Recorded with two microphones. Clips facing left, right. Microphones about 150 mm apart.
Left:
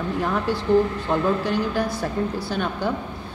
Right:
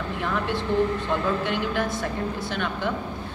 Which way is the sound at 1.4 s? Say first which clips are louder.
Left 3 dB; 40° left (ahead or behind).